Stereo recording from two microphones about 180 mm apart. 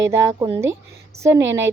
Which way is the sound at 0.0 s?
15° right (ahead or behind).